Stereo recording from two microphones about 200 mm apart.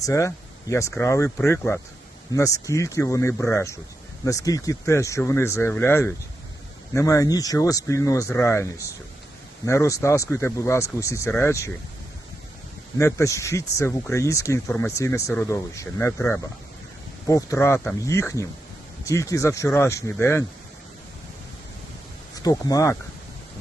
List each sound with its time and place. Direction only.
0.0 s speech: 15° left (ahead or behind)
9.6 s speech: 15° left (ahead or behind)
13.0 s speech: 15° left (ahead or behind)
22.4 s speech: 20° left (ahead or behind)